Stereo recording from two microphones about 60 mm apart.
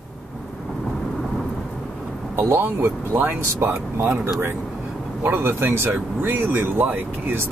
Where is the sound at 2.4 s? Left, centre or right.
Right.